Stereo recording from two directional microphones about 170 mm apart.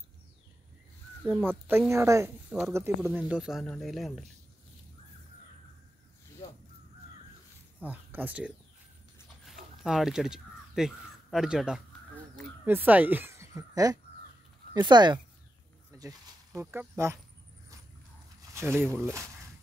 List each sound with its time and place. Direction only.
1.2 s speech: 10° right (ahead or behind)
7.8 s speech: 10° right (ahead or behind)
9.8 s speech: 5° right (ahead or behind)
18.5 s speech: 15° right (ahead or behind)
18.9 s speech: 5° left (ahead or behind)